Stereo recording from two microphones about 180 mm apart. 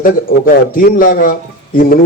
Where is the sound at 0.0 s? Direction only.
55° left (ahead or behind).